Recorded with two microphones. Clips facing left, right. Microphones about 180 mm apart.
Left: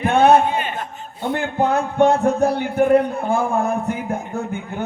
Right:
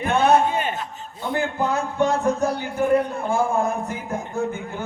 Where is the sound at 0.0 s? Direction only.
60° left (ahead or behind).